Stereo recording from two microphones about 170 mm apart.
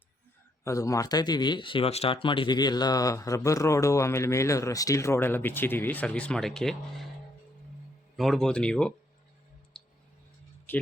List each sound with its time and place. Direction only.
0.6 s speech: 20° left (ahead or behind); by 7.1 s 5° left (ahead or behind)
8.1 s speech: centre (ahead or behind)
9.7 s clicking: 5° left (ahead or behind)
10.7 s speech: 10° left (ahead or behind)